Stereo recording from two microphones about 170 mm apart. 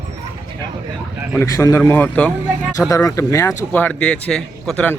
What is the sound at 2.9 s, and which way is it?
A man's voice, 20° left (ahead or behind).